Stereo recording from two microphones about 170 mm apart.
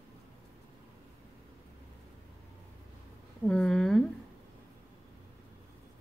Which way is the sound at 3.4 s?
5° left (ahead or behind).